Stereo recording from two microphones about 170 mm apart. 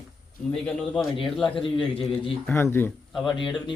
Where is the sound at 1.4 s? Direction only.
30° left (ahead or behind).